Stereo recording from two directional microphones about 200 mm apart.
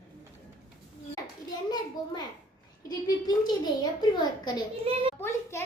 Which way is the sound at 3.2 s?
20° left (ahead or behind).